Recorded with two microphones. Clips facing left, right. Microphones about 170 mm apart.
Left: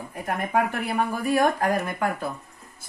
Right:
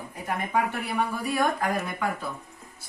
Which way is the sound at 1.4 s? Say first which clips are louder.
Left 3 dB; 40° left (ahead or behind).